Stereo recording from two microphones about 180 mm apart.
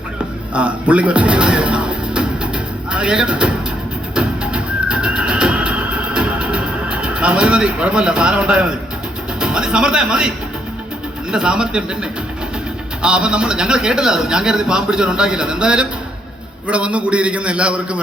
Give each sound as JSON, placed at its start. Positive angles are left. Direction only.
{"t": 0.5, "sound": "music", "side_deg": -5}
{"t": 2.9, "sound": "speech", "side_deg": -5}
{"t": 4.1, "sound": "music", "side_deg": -5}
{"t": 9.4, "sound": "a man's voice", "side_deg": -5}
{"t": 13.0, "sound": "a man's voice", "side_deg": -5}